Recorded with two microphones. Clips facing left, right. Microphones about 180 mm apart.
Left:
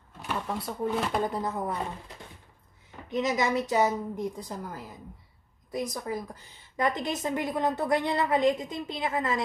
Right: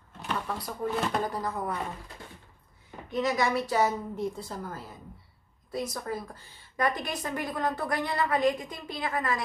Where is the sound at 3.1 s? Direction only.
20° left (ahead or behind).